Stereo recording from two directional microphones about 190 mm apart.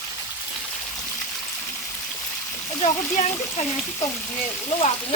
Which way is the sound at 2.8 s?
35° left (ahead or behind).